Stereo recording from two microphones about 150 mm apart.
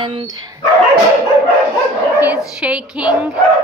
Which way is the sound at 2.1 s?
10° right (ahead or behind).